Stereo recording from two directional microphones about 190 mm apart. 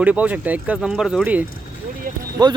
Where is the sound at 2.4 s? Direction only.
20° right (ahead or behind).